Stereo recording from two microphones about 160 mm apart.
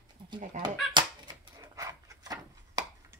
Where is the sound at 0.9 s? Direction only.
25° right (ahead or behind).